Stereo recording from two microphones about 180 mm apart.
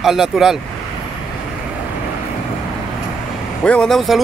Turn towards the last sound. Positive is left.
turn(degrees=0)  # may be behind; listen again after turning